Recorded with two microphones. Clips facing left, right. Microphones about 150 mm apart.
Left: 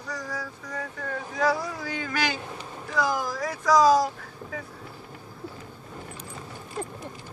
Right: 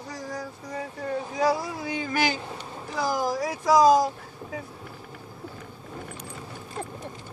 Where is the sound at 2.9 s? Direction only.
35° right (ahead or behind).